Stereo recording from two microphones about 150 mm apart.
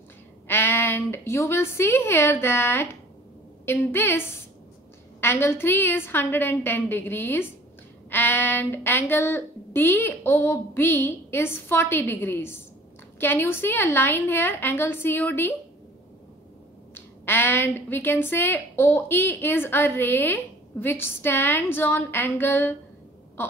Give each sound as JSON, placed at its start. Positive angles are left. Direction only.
{"t": 0.5, "sound": "a woman's voice", "side_deg": 15}
{"t": 16.9, "sound": "a woman's voice", "side_deg": 15}